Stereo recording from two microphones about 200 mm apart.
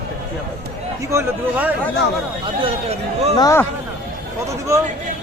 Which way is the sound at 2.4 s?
30° right (ahead or behind).